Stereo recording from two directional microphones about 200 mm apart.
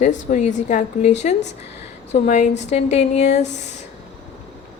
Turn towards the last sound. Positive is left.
turn(degrees=35)  # may be behind; listen again after turning